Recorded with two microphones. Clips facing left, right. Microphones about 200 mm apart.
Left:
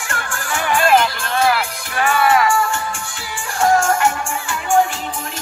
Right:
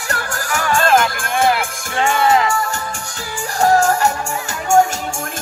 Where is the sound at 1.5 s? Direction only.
25° right (ahead or behind).